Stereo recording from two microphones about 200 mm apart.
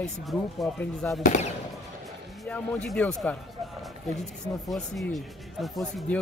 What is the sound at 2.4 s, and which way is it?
Speech, 5° left (ahead or behind).